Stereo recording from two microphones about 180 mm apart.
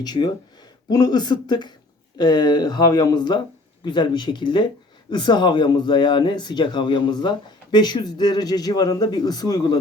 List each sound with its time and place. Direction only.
0.0 s speech: 25° left (ahead or behind)